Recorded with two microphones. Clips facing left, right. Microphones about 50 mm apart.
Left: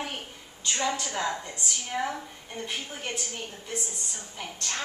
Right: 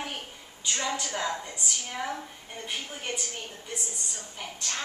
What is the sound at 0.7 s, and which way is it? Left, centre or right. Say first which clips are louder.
A woman's voice: left 2 dB; centre.